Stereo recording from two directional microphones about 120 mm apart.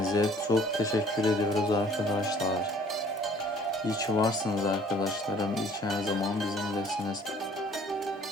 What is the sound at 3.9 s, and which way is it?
Speech, 30° left (ahead or behind).